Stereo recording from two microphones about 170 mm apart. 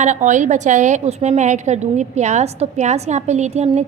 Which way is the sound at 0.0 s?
45° right (ahead or behind).